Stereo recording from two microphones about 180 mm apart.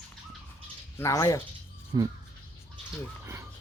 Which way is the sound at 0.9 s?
15° left (ahead or behind).